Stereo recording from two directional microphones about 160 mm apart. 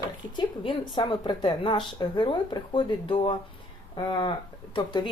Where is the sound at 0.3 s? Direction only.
30° left (ahead or behind).